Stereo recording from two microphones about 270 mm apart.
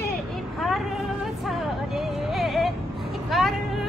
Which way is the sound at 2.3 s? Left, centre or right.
Centre.